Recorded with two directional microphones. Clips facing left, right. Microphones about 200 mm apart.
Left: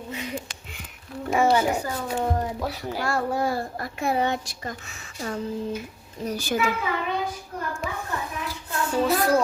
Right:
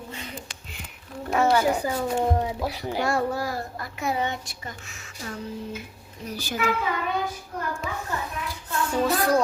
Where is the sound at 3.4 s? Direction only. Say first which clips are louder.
Left 4 dB; 25° left (ahead or behind).